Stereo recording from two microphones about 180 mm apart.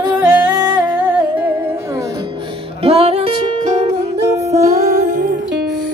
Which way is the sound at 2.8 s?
35° right (ahead or behind).